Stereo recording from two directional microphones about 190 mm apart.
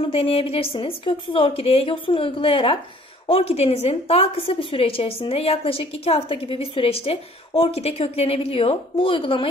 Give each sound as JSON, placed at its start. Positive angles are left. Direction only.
{"t": 0.0, "sound": "a woman's voice", "side_deg": 30}